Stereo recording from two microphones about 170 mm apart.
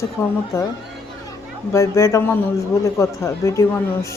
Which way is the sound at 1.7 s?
20° left (ahead or behind).